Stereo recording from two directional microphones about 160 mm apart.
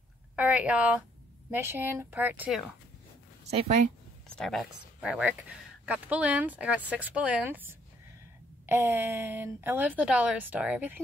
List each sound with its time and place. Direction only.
0.4 s a woman's voice: 10° right (ahead or behind)
3.4 s speech: 40° right (ahead or behind)
4.4 s a woman's voice: centre (ahead or behind)